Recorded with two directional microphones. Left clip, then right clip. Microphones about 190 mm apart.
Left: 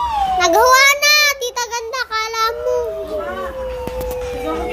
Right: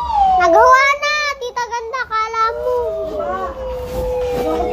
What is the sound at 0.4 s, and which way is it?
Child singing, 30° left (ahead or behind).